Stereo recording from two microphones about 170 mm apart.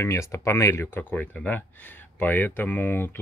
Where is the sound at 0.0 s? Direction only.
15° left (ahead or behind).